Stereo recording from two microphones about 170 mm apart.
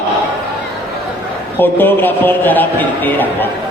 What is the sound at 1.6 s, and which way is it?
Speech, 10° left (ahead or behind).